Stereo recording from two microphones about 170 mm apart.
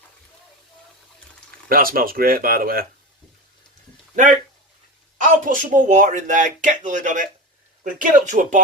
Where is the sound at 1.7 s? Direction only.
60° right (ahead or behind).